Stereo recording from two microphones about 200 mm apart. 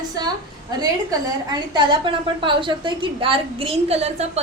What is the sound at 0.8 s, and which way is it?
A woman's voice, 20° right (ahead or behind).